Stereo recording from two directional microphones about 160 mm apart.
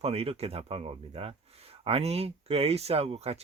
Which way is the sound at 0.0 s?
40° right (ahead or behind).